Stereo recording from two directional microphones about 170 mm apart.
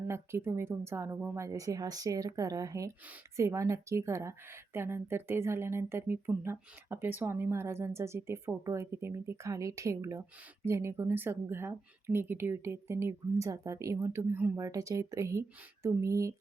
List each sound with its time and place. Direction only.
0.1 s a woman's voice: 15° right (ahead or behind)